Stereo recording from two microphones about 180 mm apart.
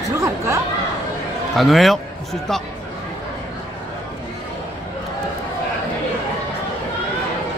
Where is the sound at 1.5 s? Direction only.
Centre (ahead or behind).